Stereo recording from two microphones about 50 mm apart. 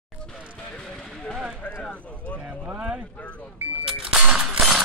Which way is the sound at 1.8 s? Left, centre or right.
Left.